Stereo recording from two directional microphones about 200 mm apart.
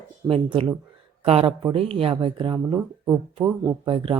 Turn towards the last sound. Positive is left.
turn(degrees=-25)  # may be behind; listen again after turning